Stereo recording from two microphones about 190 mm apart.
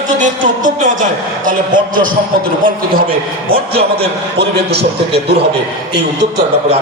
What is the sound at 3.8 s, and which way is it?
A man's voice, 55° right (ahead or behind).